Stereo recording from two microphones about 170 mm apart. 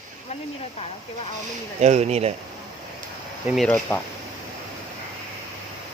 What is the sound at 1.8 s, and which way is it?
Speech, 40° right (ahead or behind).